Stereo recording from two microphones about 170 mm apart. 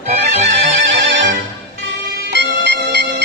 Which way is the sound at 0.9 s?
90° right.